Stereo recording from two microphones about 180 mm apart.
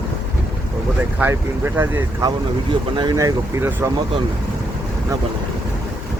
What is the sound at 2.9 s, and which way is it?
Speech, 25° right (ahead or behind).